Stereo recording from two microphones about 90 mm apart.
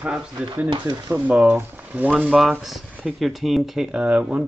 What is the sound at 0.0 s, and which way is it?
Speech, 10° right (ahead or behind).